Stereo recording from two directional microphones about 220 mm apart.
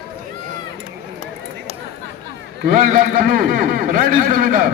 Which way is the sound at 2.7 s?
40° right (ahead or behind).